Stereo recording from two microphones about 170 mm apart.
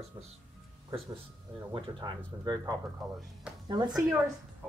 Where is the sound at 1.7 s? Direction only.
30° right (ahead or behind).